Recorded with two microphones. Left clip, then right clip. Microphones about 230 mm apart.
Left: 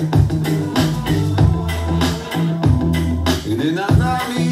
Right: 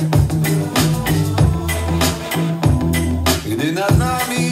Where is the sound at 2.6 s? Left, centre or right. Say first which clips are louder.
Right 1 dB; right.